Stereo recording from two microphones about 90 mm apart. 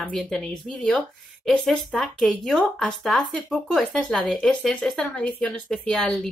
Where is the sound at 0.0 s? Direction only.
5° left (ahead or behind).